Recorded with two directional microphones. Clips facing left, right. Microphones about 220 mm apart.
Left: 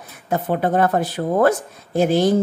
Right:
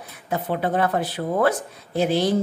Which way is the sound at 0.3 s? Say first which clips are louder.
Left 4 dB; 45° left (ahead or behind).